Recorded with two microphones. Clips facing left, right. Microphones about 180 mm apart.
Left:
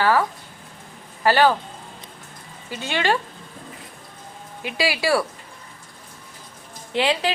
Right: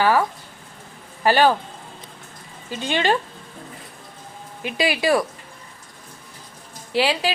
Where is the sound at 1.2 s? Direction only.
15° right (ahead or behind).